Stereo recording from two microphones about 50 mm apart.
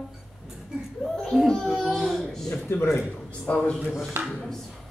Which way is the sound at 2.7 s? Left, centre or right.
Left.